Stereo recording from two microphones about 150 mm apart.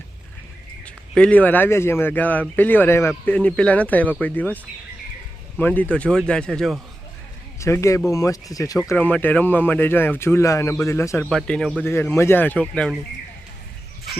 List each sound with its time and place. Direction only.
0.9 s a man's voice: 10° left (ahead or behind)
7.6 s speech: 20° left (ahead or behind)
9.0 s a man's voice: 10° left (ahead or behind)
11.3 s a man's voice: 5° left (ahead or behind)